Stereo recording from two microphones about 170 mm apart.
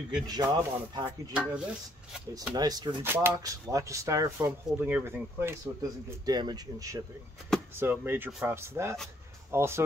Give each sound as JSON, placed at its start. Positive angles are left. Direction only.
{"t": 0.3, "sound": "speech", "side_deg": -20}
{"t": 1.3, "sound": "speech", "side_deg": -5}
{"t": 2.5, "sound": "speech", "side_deg": -25}
{"t": 3.0, "sound": "speech", "side_deg": -15}